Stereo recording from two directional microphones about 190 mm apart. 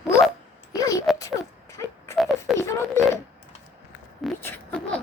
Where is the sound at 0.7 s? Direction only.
20° left (ahead or behind).